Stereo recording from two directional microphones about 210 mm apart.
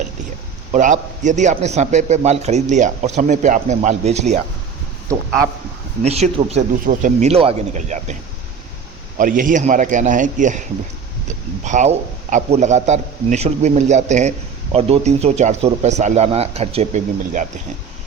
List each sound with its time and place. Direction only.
0.7 s a man's voice: 35° right (ahead or behind)
6.0 s a man's voice: 30° right (ahead or behind)
9.1 s a man's voice: 40° right (ahead or behind)